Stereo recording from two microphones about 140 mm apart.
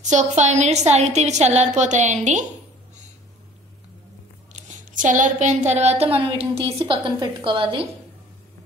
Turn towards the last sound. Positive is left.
turn(degrees=-40)  # may be behind; listen again after turning